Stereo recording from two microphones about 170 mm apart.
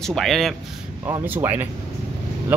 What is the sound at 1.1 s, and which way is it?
Speech, 10° right (ahead or behind).